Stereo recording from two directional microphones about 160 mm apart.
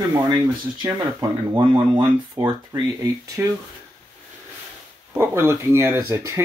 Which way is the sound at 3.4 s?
15° right (ahead or behind).